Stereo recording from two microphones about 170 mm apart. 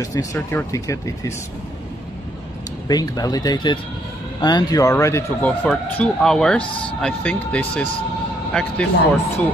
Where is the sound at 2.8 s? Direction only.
25° left (ahead or behind).